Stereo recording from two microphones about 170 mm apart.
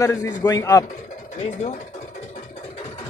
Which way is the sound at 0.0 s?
20° left (ahead or behind).